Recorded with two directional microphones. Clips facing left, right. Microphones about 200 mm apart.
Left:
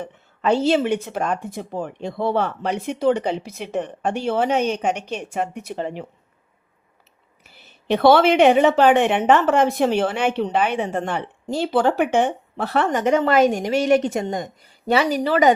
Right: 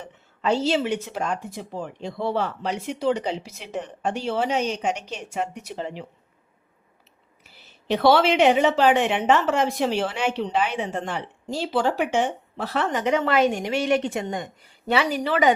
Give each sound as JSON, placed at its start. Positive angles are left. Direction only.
{"t": 0.0, "sound": "speech", "side_deg": 55}
{"t": 7.9, "sound": "a woman's voice", "side_deg": 55}